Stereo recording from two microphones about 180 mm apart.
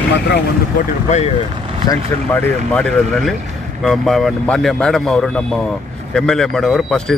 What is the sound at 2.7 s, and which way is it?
Speech, 5° left (ahead or behind).